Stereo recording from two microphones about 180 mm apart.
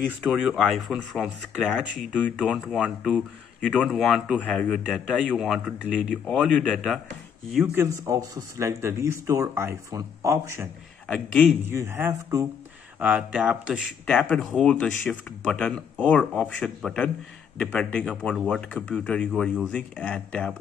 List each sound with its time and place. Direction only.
0.2 s a man's voice: centre (ahead or behind)
11.1 s a man's voice: 5° left (ahead or behind)
11.6 s speech: 15° right (ahead or behind)
13.0 s a man's voice: 5° right (ahead or behind)
14.1 s a man's voice: 5° left (ahead or behind)